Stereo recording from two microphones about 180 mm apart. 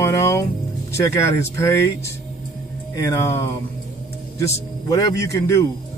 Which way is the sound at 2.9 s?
15° left (ahead or behind).